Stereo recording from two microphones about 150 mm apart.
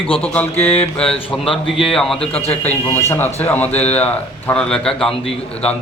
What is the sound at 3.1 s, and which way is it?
A man's voice, 15° left (ahead or behind).